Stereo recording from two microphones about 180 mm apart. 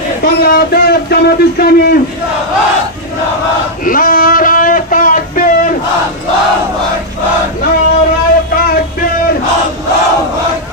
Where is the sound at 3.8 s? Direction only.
50° left (ahead or behind).